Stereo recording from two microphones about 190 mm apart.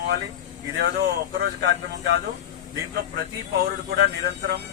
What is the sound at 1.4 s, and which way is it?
Speech, 65° right (ahead or behind).